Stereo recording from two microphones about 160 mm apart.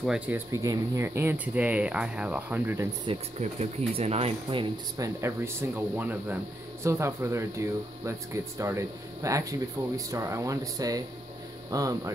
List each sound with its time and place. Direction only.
0.0 s speech: 5° right (ahead or behind)
0.5 s speech: 20° right (ahead or behind)
3.1 s speech: 40° right (ahead or behind)
4.9 s speech: 20° right (ahead or behind)